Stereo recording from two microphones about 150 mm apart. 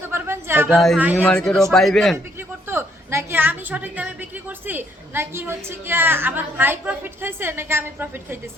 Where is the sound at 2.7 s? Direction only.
15° right (ahead or behind).